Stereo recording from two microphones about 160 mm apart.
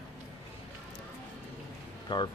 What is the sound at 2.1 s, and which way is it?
Speech, 30° left (ahead or behind).